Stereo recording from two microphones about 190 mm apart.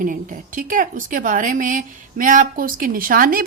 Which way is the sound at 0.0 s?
45° right (ahead or behind).